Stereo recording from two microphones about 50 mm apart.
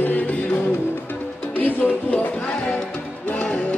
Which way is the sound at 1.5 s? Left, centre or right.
Left.